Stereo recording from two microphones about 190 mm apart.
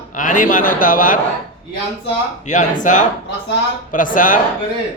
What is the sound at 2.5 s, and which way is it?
A man's voice, 40° left (ahead or behind).